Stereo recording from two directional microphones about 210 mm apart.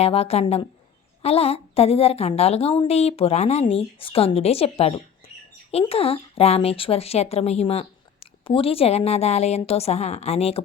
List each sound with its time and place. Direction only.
0.0 s a woman's voice: 30° left (ahead or behind)